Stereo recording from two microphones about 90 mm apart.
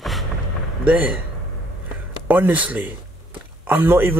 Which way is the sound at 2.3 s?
20° right (ahead or behind).